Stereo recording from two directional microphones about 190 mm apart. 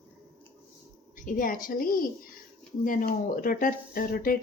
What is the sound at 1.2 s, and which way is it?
Speech, 45° left (ahead or behind).